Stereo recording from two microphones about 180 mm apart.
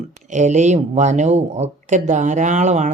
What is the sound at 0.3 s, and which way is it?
Speech, 40° right (ahead or behind).